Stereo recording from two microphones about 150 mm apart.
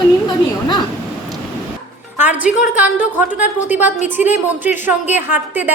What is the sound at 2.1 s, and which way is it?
A woman's voice, 10° right (ahead or behind).